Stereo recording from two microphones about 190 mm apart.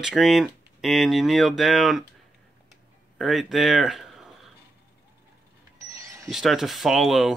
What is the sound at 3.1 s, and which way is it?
Speech, centre (ahead or behind).